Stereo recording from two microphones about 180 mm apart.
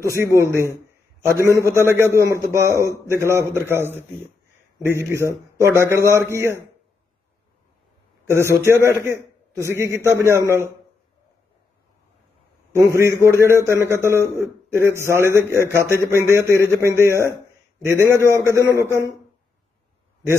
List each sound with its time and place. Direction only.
0.0 s a man's voice: 15° right (ahead or behind)
8.3 s a man's voice: 15° right (ahead or behind)
12.7 s a man's voice: 15° right (ahead or behind)